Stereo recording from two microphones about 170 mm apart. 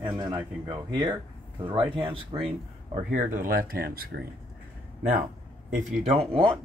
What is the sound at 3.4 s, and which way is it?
Speech, 55° right (ahead or behind).